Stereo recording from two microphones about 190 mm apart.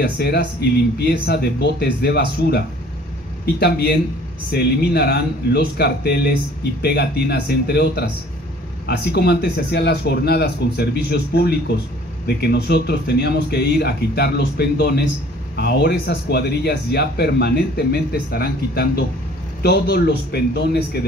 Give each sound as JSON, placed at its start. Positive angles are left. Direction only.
{"t": 0.0, "sound": "speech", "side_deg": 60}